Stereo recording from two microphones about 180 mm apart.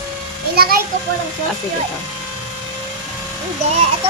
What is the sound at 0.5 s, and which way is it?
Speech, 55° right (ahead or behind).